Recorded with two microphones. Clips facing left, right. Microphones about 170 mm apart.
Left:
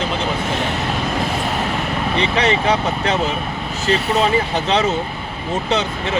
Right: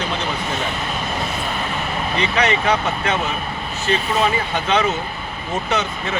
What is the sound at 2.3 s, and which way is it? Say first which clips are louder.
Speech: even; 30° left (ahead or behind).